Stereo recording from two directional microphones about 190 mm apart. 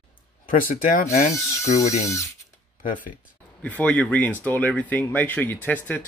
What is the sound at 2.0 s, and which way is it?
Speech, 15° left (ahead or behind).